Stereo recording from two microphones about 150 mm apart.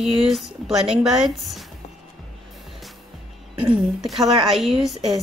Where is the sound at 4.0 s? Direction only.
Centre (ahead or behind).